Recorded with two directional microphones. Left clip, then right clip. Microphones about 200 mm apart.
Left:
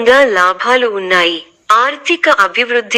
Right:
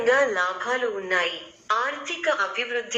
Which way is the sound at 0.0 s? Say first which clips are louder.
Left 13 dB; 45° left (ahead or behind).